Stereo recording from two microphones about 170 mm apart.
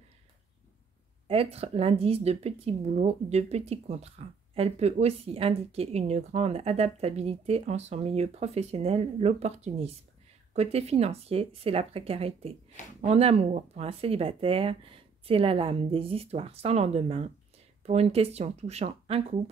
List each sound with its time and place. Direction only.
1.2 s speech: 35° right (ahead or behind)